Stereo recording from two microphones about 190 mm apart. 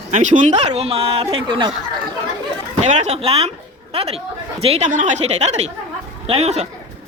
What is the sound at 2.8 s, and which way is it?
A man's voice, 35° right (ahead or behind).